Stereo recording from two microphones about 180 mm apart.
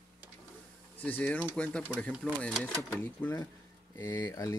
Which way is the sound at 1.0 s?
10° left (ahead or behind).